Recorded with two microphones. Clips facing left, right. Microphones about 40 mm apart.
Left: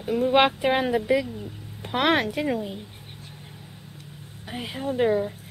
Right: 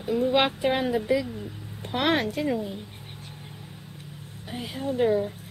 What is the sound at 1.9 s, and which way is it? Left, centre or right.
Speech, left.